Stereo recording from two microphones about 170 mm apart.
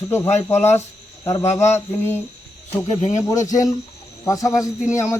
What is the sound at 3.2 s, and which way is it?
Speech, 20° left (ahead or behind).